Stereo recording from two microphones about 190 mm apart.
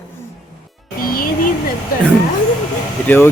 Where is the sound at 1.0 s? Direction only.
50° left (ahead or behind).